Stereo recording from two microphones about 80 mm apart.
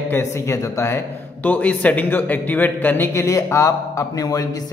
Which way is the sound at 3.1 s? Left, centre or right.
Left.